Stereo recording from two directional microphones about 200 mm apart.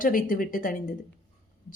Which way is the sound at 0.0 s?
45° left (ahead or behind).